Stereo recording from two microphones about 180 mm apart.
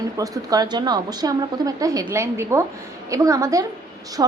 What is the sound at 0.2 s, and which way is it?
A woman's voice, 20° right (ahead or behind).